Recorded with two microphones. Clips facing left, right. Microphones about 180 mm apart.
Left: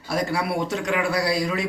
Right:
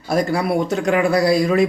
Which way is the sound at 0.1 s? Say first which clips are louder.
Right 6 dB; 45° right (ahead or behind).